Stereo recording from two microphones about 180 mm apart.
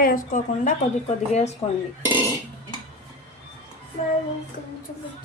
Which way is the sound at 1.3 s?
40° left (ahead or behind).